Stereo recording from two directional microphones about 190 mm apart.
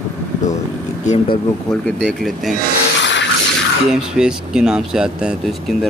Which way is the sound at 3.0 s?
75° left (ahead or behind).